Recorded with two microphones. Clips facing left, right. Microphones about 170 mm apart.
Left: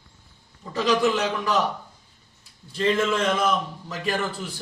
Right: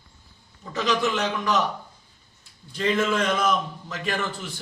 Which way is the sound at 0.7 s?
30° left (ahead or behind).